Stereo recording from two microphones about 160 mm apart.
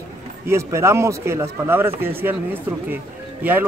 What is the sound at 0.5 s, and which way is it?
A man's voice, 15° right (ahead or behind).